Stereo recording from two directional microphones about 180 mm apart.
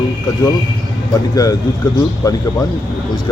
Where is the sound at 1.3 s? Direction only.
20° left (ahead or behind).